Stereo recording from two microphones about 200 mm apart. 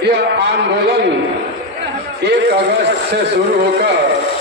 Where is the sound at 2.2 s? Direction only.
55° right (ahead or behind).